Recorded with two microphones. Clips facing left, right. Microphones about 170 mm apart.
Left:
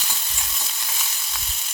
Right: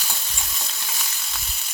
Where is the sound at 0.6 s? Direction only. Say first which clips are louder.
Even; centre (ahead or behind).